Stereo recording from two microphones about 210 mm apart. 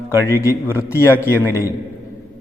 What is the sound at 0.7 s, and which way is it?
Speech, 10° left (ahead or behind).